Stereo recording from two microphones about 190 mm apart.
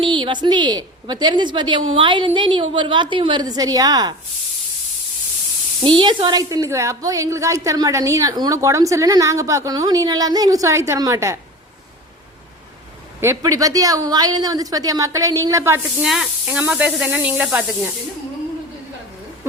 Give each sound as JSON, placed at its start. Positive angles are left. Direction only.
{"t": 0.0, "sound": "a woman's voice", "side_deg": -25}
{"t": 5.8, "sound": "a woman's voice", "side_deg": -25}
{"t": 13.1, "sound": "a woman's voice", "side_deg": -15}
{"t": 16.0, "sound": "a woman's voice", "side_deg": 0}